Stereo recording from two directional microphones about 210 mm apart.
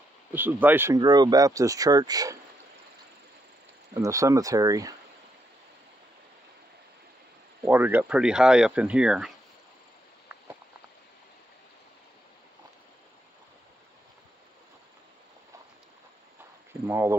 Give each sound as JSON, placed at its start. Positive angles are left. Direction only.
{"t": 0.3, "sound": "speech", "side_deg": -10}
{"t": 3.9, "sound": "speech", "side_deg": -15}
{"t": 7.6, "sound": "speech", "side_deg": -10}
{"t": 16.8, "sound": "speech", "side_deg": -10}